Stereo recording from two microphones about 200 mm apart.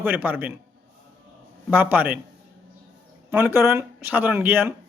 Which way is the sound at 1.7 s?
10° right (ahead or behind).